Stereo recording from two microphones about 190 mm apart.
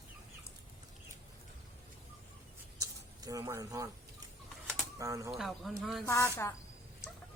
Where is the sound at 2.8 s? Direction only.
20° right (ahead or behind).